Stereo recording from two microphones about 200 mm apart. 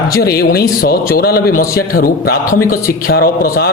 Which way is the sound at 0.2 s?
50° left (ahead or behind).